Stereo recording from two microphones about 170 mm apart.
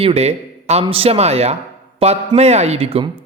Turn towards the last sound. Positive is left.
turn(degrees=-35)  # may be behind; listen again after turning